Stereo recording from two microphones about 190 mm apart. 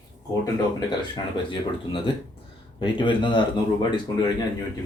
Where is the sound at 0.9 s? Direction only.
25° left (ahead or behind).